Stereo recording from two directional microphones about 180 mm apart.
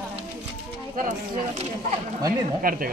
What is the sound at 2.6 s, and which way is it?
Speech, 55° right (ahead or behind).